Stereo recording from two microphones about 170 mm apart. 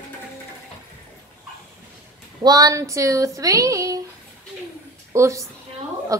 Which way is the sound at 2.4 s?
20° right (ahead or behind).